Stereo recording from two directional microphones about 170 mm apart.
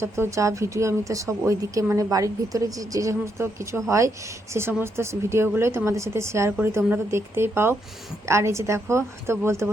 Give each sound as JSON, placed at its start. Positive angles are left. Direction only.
{"t": 0.0, "sound": "speech", "side_deg": -15}